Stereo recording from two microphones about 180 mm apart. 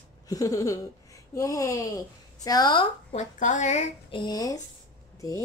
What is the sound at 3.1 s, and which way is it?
Speech, 45° left (ahead or behind).